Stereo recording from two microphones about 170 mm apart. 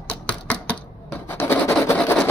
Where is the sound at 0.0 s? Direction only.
10° left (ahead or behind).